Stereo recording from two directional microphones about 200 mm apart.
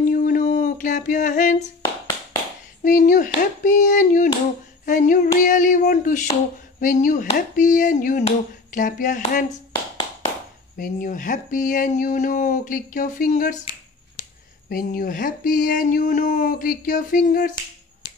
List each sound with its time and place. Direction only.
0.1 s a sound: 45° left (ahead or behind)
2.8 s speech: 40° left (ahead or behind)
10.8 s speech: 40° left (ahead or behind)
14.7 s speech: 45° left (ahead or behind)